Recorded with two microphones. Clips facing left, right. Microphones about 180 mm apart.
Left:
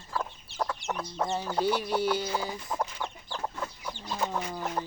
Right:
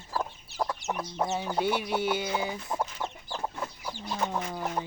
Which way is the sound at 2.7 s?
5° right (ahead or behind).